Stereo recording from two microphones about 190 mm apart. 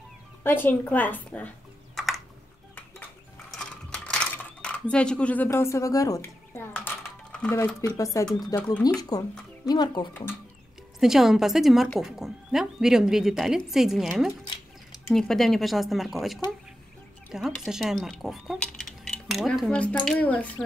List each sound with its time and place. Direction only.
0.4 s a woman's voice: 10° left (ahead or behind)
2.0 s typing: centre (ahead or behind)
3.5 s mechanisms: 5° left (ahead or behind)
7.3 s speech: 5° left (ahead or behind)
7.6 s a woman's voice: 15° left (ahead or behind)
11.0 s speech: centre (ahead or behind)